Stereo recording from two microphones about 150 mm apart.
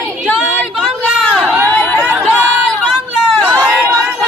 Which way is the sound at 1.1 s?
5° right (ahead or behind).